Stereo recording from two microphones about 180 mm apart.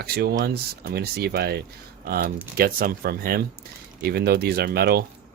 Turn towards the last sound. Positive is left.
turn(degrees=-60)  # may be behind; listen again after turning